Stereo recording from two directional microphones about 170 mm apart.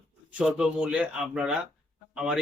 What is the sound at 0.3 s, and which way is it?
Speech, 5° right (ahead or behind).